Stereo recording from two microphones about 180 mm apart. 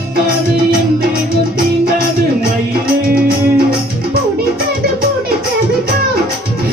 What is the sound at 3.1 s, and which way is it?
Music, 55° right (ahead or behind).